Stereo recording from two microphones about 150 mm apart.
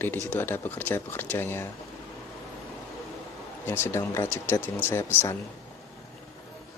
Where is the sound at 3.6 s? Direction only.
15° left (ahead or behind).